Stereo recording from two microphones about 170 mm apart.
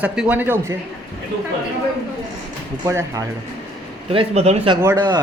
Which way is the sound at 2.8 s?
20° right (ahead or behind).